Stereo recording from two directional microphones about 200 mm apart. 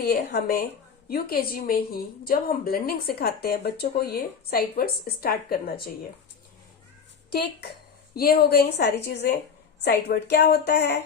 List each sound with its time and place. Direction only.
0.0 s a woman's voice: 55° left (ahead or behind)
7.3 s a woman's voice: 55° left (ahead or behind)